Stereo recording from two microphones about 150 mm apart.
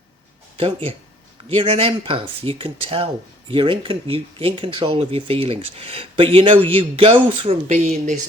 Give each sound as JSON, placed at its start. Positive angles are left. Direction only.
{"t": 0.5, "sound": "speech", "side_deg": -40}